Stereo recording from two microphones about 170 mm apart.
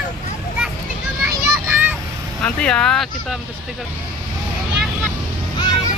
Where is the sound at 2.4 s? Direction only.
5° left (ahead or behind).